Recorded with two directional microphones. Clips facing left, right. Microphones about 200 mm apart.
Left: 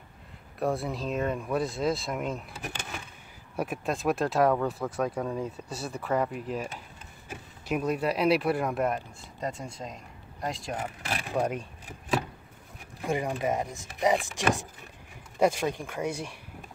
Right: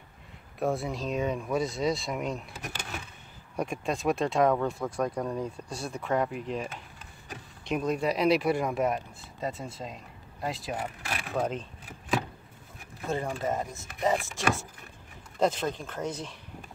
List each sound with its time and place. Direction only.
0.6 s speech: centre (ahead or behind)
11.3 s speech: 10° left (ahead or behind)
13.0 s speech: 15° left (ahead or behind)